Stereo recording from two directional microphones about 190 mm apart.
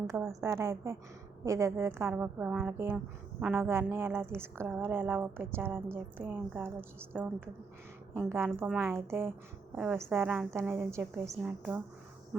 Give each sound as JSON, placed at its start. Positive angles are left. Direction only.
{"t": 0.1, "sound": "a woman's voice", "side_deg": -15}